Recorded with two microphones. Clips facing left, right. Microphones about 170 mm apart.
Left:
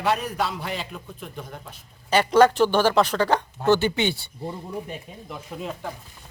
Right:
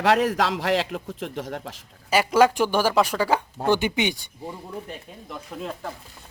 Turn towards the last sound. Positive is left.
turn(degrees=0)  # may be behind; listen again after turning